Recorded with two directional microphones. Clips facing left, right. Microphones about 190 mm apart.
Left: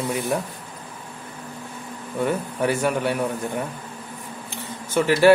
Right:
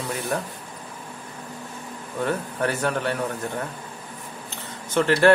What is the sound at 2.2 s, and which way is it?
Speech, 10° left (ahead or behind).